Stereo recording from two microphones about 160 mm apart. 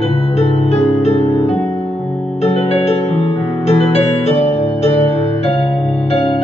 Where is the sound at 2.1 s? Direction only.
5° left (ahead or behind).